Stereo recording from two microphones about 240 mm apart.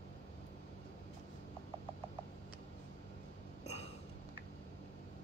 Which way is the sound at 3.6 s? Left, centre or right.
Left.